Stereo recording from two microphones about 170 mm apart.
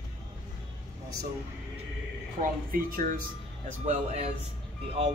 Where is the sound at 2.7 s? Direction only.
55° right (ahead or behind).